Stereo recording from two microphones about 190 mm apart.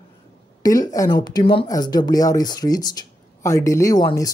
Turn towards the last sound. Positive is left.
turn(degrees=20)  # may be behind; listen again after turning